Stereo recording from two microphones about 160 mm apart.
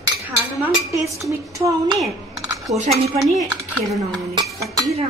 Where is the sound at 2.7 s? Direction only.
40° right (ahead or behind).